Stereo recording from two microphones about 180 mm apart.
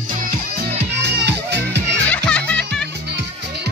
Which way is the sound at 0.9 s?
70° right (ahead or behind).